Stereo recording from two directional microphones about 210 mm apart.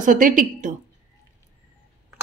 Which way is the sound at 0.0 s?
40° right (ahead or behind).